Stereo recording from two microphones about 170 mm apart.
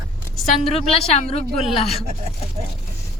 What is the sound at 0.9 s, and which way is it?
Speech, 40° left (ahead or behind).